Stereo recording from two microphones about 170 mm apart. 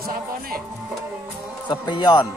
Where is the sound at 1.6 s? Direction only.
25° left (ahead or behind).